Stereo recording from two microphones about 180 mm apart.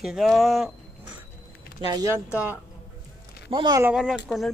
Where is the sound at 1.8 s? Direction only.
20° right (ahead or behind).